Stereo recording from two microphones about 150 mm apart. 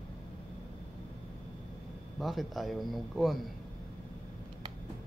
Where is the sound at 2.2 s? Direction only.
Centre (ahead or behind).